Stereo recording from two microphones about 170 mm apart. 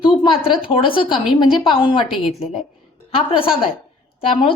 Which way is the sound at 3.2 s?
30° left (ahead or behind).